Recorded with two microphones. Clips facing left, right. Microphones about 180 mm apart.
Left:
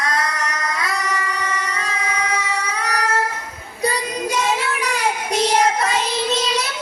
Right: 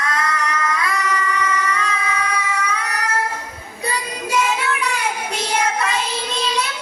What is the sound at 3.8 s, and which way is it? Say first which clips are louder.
Child singing: left 4 dB; 35° left (ahead or behind).